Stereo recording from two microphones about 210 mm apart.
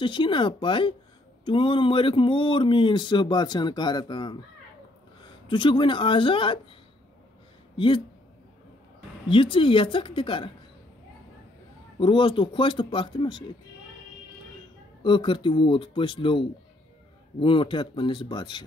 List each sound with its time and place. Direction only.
0.0 s speech: 25° left (ahead or behind)
5.5 s speech: 25° left (ahead or behind)
7.7 s speech: 25° left (ahead or behind)
9.3 s speech: 25° left (ahead or behind)
12.0 s speech: 25° left (ahead or behind)
15.0 s speech: 25° left (ahead or behind)